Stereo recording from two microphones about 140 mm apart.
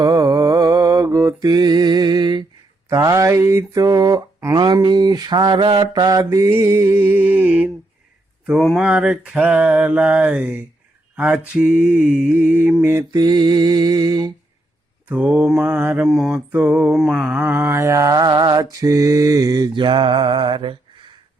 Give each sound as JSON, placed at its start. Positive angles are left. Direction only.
{"t": 0.0, "sound": "mantra", "side_deg": -25}
{"t": 4.5, "sound": "mantra", "side_deg": -35}
{"t": 13.1, "sound": "mantra", "side_deg": -30}
{"t": 15.1, "sound": "mantra", "side_deg": -10}
{"t": 16.0, "sound": "mantra", "side_deg": 0}